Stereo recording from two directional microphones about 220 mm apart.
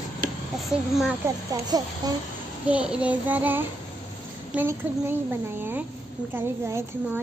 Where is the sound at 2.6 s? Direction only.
5° right (ahead or behind).